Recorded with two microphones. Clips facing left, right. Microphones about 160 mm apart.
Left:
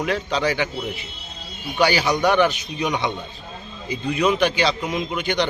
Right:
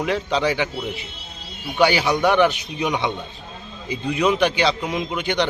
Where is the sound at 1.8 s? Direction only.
20° right (ahead or behind).